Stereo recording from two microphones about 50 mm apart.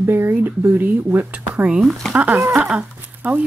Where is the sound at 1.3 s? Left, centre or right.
Right.